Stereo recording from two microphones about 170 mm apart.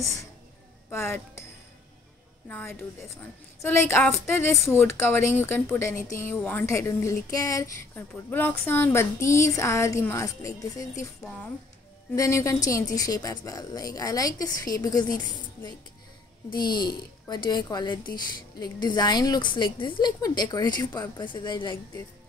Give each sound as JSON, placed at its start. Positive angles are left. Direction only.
{"t": 0.8, "sound": "speech", "side_deg": 10}
{"t": 2.4, "sound": "a woman's voice", "side_deg": 10}
{"t": 16.4, "sound": "a woman's voice", "side_deg": 25}